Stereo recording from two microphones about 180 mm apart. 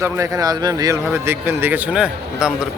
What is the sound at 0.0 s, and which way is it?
A man's voice, 20° right (ahead or behind).